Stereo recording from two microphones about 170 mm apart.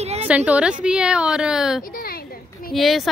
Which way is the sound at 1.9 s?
60° left (ahead or behind).